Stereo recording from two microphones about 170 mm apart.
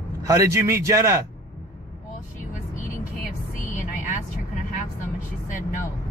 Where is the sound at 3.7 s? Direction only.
50° left (ahead or behind).